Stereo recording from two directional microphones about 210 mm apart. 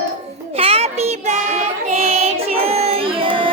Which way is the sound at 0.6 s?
30° right (ahead or behind).